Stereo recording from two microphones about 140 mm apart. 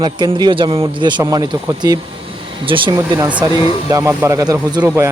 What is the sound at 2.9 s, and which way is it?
Speech, 25° right (ahead or behind).